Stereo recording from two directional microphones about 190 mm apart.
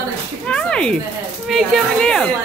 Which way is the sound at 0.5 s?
5° left (ahead or behind).